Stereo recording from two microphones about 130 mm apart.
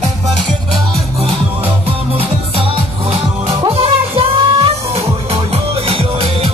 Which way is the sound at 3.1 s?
40° right (ahead or behind).